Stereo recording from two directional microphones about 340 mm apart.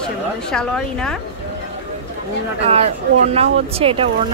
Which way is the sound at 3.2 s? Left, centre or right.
Centre.